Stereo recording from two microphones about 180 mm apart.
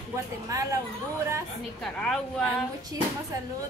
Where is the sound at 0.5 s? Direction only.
20° right (ahead or behind).